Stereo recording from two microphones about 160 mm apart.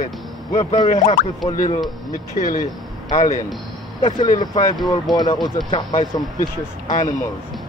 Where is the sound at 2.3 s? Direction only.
55° left (ahead or behind).